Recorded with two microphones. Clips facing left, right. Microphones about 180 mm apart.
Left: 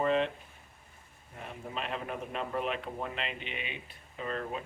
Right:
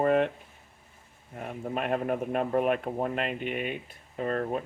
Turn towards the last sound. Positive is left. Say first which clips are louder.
# right 7 dB
turn(degrees=-45)  # may be behind; listen again after turning